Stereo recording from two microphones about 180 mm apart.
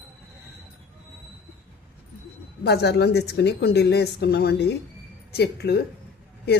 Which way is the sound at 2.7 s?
65° left (ahead or behind).